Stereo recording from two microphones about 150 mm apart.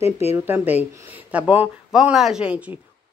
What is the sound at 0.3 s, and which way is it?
Speech, 15° right (ahead or behind).